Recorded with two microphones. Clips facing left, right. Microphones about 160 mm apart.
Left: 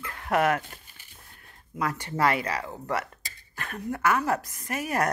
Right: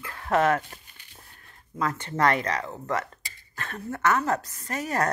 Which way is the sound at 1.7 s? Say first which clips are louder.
Right 1 dB; 10° left (ahead or behind).